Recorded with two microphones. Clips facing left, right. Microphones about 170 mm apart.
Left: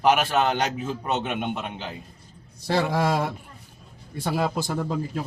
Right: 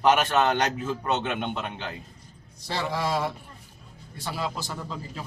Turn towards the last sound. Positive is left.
turn(degrees=55)  # may be behind; listen again after turning